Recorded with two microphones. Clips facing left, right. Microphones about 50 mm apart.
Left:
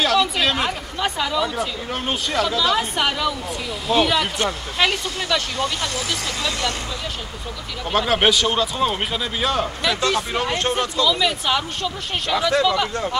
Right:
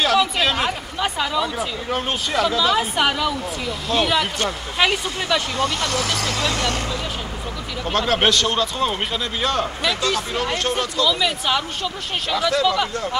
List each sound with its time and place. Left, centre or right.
0.0 s a man's voice: centre
5.9 s speech: right
7.9 s a man's voice: centre
10.1 s speech: left
11.1 s a man's voice: centre
12.4 s speech: centre
12.6 s a man's voice: centre